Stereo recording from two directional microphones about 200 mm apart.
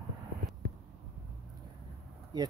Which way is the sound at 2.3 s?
20° right (ahead or behind).